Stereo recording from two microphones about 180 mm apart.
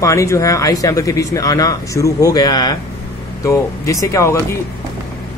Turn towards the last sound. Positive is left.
turn(degrees=15)  # may be behind; listen again after turning